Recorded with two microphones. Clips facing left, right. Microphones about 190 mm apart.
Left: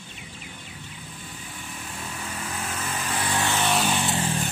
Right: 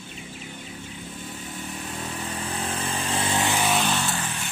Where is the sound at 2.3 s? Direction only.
35° right (ahead or behind); by 3.7 s 15° right (ahead or behind).